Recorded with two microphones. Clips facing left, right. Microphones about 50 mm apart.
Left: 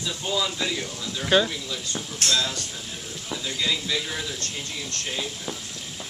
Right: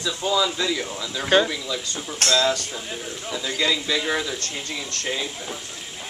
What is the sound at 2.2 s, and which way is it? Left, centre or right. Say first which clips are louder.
Speech: right 6 dB; right.